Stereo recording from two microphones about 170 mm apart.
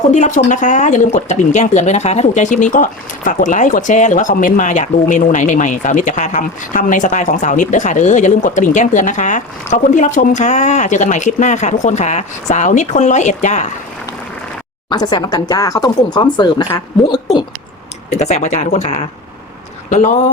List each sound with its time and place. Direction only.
0.1 s speech: 45° left (ahead or behind)
14.8 s speech: 25° left (ahead or behind)
18.2 s speech: 45° left (ahead or behind)